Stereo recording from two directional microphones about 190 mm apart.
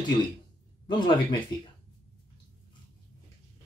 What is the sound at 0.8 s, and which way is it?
Speech, 25° left (ahead or behind).